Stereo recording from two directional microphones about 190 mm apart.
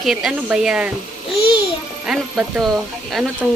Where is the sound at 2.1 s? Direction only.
Centre (ahead or behind).